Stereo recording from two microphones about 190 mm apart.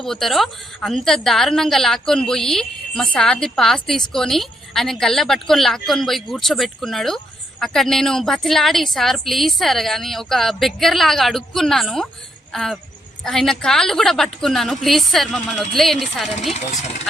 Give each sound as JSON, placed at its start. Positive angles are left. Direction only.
{"t": 0.0, "sound": "a woman's voice", "side_deg": 0}
{"t": 16.6, "sound": "speech", "side_deg": 35}